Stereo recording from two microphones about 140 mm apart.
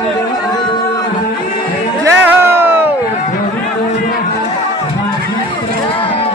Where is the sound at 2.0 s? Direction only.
15° right (ahead or behind).